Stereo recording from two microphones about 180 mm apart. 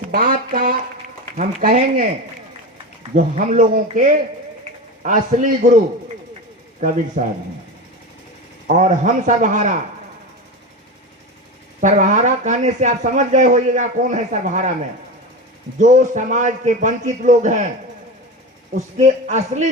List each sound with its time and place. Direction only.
0.1 s speech: 55° right (ahead or behind)
3.2 s speech: 45° right (ahead or behind)
6.7 s speech: 40° right (ahead or behind)
8.6 s speech: 45° right (ahead or behind)
11.8 s speech: 45° right (ahead or behind)
15.8 s speech: 40° right (ahead or behind)
18.9 s a man's voice: 40° right (ahead or behind)